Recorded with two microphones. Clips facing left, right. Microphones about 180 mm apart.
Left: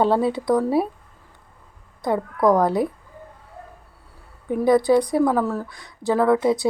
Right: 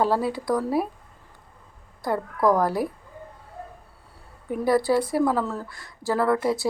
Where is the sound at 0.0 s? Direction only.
25° left (ahead or behind).